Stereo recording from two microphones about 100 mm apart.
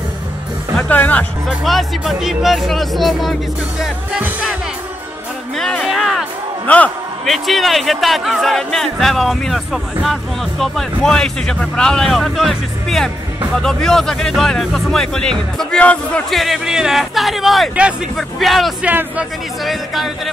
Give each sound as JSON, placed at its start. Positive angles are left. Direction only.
{"t": 0.7, "sound": "speech", "side_deg": 15}
{"t": 1.6, "sound": "speech", "side_deg": 0}
{"t": 5.6, "sound": "music", "side_deg": 5}
{"t": 6.7, "sound": "speech", "side_deg": 15}
{"t": 7.2, "sound": "speech", "side_deg": 0}
{"t": 16.3, "sound": "speech", "side_deg": 0}
{"t": 18.8, "sound": "speech", "side_deg": -15}
{"t": 19.6, "sound": "speech", "side_deg": 0}